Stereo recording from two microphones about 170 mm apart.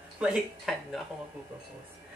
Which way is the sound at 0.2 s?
Centre (ahead or behind).